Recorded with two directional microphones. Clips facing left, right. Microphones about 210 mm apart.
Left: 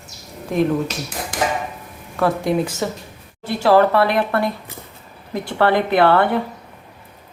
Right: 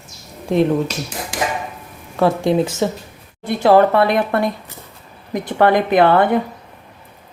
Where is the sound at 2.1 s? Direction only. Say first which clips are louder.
Right 3 dB; 25° right (ahead or behind).